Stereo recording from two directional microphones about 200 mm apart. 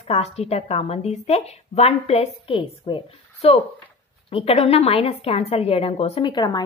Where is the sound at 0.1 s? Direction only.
30° left (ahead or behind).